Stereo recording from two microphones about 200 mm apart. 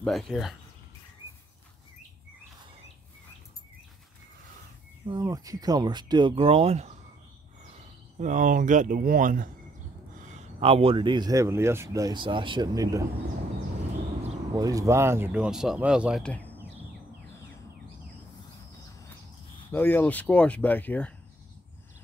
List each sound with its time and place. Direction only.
0.0 s speech: centre (ahead or behind)
5.0 s speech: 20° right (ahead or behind)
8.2 s speech: 40° right (ahead or behind); by 13.0 s 15° right (ahead or behind)
14.5 s speech: 15° right (ahead or behind); by 16.5 s 5° left (ahead or behind)
19.7 s speech: 10° left (ahead or behind)